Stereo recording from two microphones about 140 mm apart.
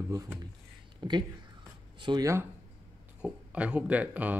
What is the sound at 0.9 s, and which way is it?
Speech, 30° right (ahead or behind).